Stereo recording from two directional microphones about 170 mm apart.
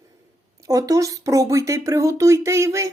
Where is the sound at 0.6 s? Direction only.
20° right (ahead or behind).